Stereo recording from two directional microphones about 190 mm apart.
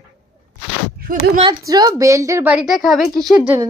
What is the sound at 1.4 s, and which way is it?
A woman's voice, 20° right (ahead or behind).